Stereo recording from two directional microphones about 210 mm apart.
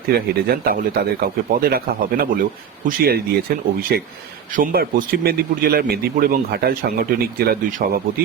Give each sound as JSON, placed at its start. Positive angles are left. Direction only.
{"t": 0.1, "sound": "a man's voice", "side_deg": -45}